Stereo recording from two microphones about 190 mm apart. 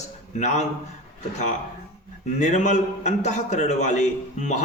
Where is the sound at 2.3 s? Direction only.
35° left (ahead or behind).